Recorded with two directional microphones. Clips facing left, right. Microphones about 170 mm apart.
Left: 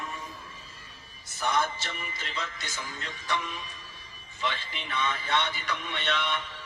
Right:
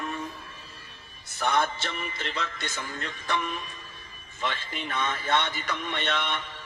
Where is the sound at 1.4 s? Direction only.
60° right (ahead or behind).